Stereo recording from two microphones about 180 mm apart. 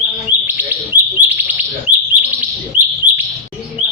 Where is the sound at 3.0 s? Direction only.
10° right (ahead or behind).